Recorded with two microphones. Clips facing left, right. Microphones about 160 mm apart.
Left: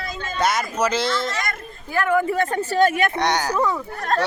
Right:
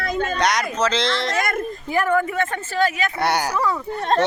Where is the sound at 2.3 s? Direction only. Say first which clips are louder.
Left 3 dB; 40° left (ahead or behind).